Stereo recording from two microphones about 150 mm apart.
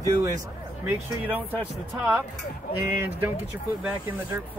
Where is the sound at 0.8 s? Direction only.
10° right (ahead or behind).